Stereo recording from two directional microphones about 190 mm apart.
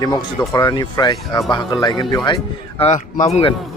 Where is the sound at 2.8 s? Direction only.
35° left (ahead or behind).